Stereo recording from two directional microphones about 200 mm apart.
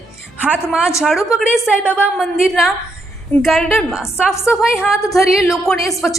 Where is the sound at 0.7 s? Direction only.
5° right (ahead or behind).